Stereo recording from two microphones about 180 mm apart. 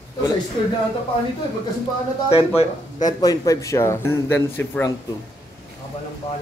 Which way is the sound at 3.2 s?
20° left (ahead or behind).